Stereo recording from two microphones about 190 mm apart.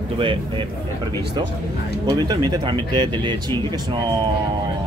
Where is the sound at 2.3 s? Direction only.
20° right (ahead or behind).